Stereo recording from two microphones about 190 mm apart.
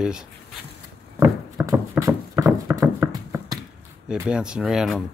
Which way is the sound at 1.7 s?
15° right (ahead or behind).